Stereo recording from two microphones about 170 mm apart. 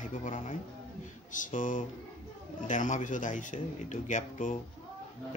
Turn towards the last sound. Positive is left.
turn(degrees=45)  # may be behind; listen again after turning